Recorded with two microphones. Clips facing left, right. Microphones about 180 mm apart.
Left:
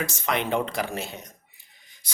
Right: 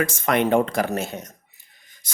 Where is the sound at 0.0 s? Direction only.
50° right (ahead or behind).